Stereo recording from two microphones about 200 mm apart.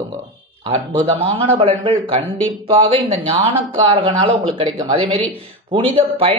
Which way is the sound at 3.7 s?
25° right (ahead or behind).